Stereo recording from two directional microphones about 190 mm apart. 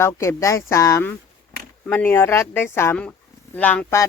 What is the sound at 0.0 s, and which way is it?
A woman's voice, 15° left (ahead or behind).